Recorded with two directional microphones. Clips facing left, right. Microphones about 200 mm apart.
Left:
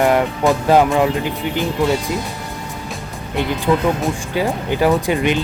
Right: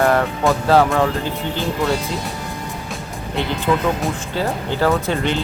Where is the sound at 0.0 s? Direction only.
15° left (ahead or behind).